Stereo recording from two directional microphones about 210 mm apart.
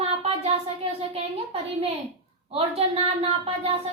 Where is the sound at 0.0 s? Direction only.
30° right (ahead or behind).